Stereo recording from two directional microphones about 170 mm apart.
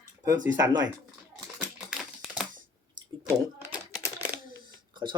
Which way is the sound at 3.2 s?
20° right (ahead or behind).